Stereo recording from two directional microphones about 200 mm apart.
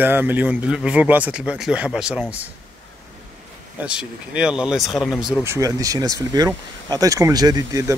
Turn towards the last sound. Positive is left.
turn(degrees=-20)  # may be behind; listen again after turning